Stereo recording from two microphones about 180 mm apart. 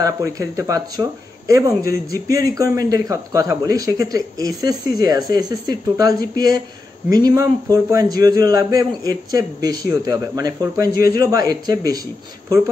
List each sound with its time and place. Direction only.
0.0 s a man's voice: 20° right (ahead or behind)